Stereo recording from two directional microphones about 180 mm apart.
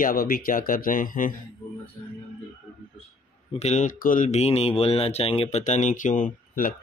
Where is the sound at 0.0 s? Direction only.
50° left (ahead or behind).